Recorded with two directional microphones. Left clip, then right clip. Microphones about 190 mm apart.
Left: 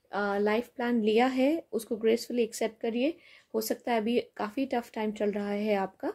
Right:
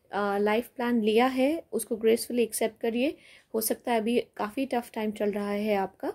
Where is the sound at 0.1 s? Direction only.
25° right (ahead or behind).